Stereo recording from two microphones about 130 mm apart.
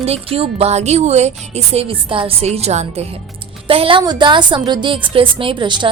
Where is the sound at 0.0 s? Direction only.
50° right (ahead or behind).